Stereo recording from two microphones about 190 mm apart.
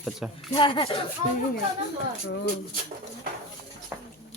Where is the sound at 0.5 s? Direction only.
25° left (ahead or behind).